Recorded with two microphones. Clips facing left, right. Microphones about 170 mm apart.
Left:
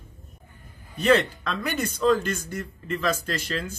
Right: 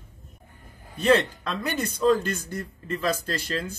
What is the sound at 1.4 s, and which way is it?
Speech, 30° right (ahead or behind).